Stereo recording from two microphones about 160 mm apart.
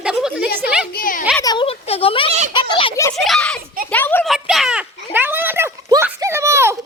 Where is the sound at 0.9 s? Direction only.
60° left (ahead or behind).